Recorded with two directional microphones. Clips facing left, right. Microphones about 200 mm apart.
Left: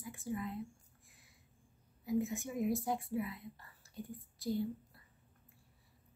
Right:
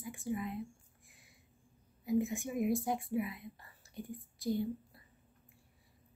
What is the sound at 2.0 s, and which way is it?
Speech, 15° right (ahead or behind).